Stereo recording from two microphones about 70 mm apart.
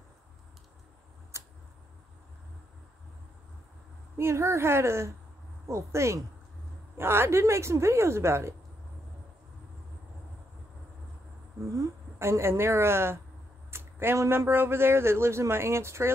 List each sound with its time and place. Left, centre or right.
1.3 s a sound: right
4.2 s a man's voice: right
11.7 s a woman's voice: right